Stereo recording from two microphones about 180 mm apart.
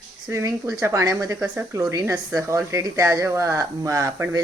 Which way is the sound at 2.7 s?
15° right (ahead or behind).